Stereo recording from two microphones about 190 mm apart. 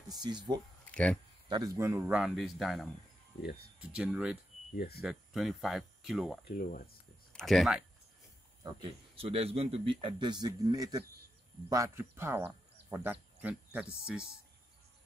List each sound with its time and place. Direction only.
0.1 s speech: 20° right (ahead or behind)
0.9 s speech: 5° left (ahead or behind)
1.5 s speech: 15° right (ahead or behind); by 2.9 s centre (ahead or behind)
3.9 s speech: 5° right (ahead or behind)
4.7 s speech: 55° left (ahead or behind)
5.0 s speech: centre (ahead or behind)
6.4 s speech: 50° left (ahead or behind)
7.3 s speech: centre (ahead or behind)
8.6 s speech: 30° right (ahead or behind); by 14.2 s 5° right (ahead or behind)